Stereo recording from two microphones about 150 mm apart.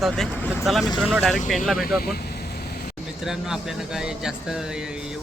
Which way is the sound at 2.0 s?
90° left.